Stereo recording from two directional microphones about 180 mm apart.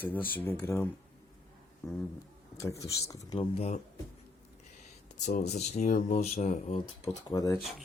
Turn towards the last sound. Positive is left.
turn(degrees=20)  # may be behind; listen again after turning